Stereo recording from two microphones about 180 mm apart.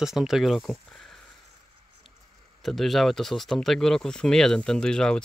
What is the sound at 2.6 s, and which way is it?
Speech, centre (ahead or behind).